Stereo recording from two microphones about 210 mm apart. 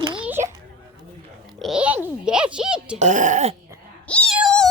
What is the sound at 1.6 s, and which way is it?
Speech, 5° right (ahead or behind).